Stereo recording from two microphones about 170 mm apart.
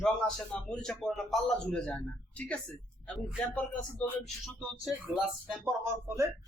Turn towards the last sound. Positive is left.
turn(degrees=-15)  # may be behind; listen again after turning